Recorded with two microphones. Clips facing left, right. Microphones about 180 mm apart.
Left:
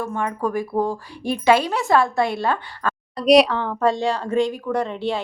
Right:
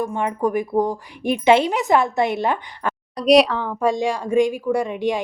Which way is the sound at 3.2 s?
Centre (ahead or behind).